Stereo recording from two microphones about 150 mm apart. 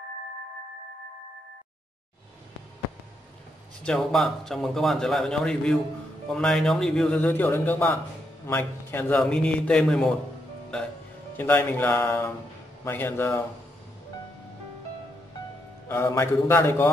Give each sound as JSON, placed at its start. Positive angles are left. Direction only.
{"t": 3.8, "sound": "a man's voice", "side_deg": 5}
{"t": 11.3, "sound": "speech", "side_deg": 15}
{"t": 15.9, "sound": "speech", "side_deg": 15}